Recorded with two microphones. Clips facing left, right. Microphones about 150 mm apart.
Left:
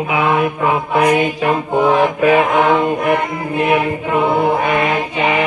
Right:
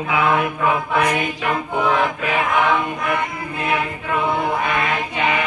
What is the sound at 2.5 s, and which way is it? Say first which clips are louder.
Choir: left 6 dB; 35° left (ahead or behind).